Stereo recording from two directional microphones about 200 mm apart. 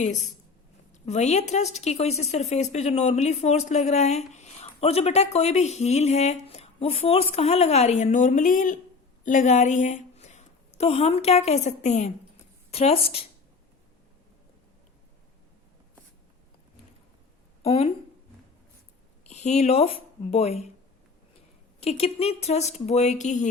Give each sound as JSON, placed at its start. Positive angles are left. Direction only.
{"t": 1.0, "sound": "a woman's voice", "side_deg": 35}
{"t": 17.6, "sound": "a woman's voice", "side_deg": 30}
{"t": 19.3, "sound": "speech", "side_deg": 35}
{"t": 21.8, "sound": "speech", "side_deg": 30}